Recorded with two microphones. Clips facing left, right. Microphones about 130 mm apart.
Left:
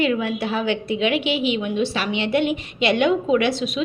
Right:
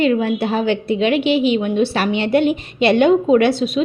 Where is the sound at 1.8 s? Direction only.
60° right (ahead or behind).